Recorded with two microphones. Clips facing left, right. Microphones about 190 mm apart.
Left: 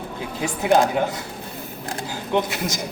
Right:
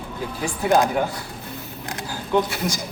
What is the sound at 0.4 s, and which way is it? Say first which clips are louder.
Speech: left 1 dB; 20° left (ahead or behind).